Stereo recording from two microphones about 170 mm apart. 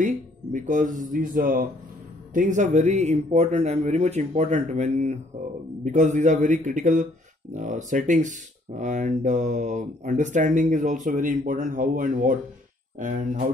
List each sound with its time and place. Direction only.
0.0 s speech: 45° right (ahead or behind)